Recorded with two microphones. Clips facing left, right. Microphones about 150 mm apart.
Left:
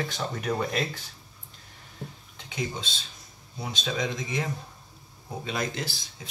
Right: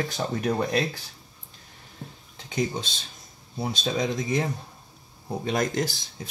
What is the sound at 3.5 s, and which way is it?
Speech, 35° right (ahead or behind).